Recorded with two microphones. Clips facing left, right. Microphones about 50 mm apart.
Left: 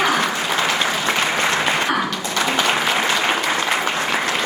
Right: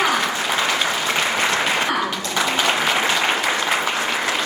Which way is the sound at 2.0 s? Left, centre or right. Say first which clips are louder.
Even; centre.